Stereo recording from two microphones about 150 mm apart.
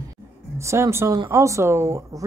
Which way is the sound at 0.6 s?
20° right (ahead or behind).